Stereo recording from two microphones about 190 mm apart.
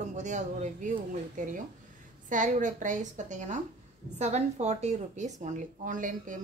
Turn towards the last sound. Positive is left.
turn(degrees=-45)  # may be behind; listen again after turning